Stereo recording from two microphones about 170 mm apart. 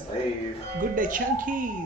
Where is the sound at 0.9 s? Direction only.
50° right (ahead or behind).